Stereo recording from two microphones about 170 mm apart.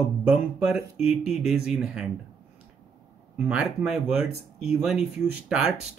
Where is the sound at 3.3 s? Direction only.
5° right (ahead or behind).